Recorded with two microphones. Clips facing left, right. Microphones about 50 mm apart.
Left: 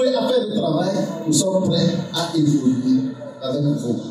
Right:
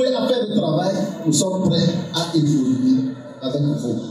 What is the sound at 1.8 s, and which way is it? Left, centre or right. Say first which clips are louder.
Music: even; centre.